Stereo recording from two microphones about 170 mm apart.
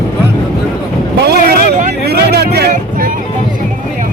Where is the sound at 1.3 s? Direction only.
65° right (ahead or behind).